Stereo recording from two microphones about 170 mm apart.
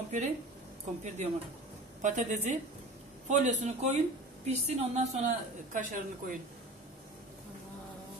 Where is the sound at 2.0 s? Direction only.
45° right (ahead or behind).